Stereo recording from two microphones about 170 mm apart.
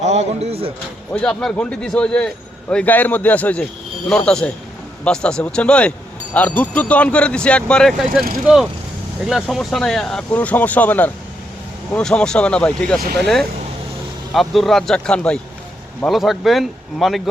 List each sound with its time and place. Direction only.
0.0 s speech: 40° right (ahead or behind)
1.1 s a man's voice: 5° left (ahead or behind)
9.2 s speech: centre (ahead or behind)